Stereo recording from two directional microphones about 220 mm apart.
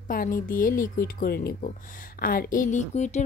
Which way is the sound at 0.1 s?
40° left (ahead or behind).